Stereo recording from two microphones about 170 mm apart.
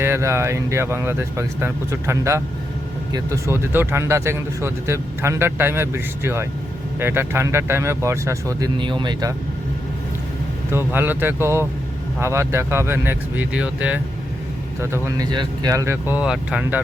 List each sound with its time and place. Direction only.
0.0 s speech: 15° right (ahead or behind)
10.7 s speech: 15° right (ahead or behind)
15.0 s speech: 25° right (ahead or behind); by 16.8 s 10° right (ahead or behind)